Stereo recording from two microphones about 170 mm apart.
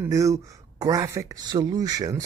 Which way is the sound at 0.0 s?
20° right (ahead or behind).